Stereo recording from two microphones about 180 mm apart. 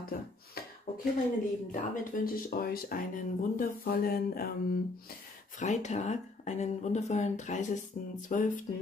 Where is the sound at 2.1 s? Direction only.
55° left (ahead or behind).